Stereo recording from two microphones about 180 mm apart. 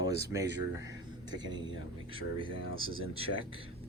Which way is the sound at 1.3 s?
25° right (ahead or behind).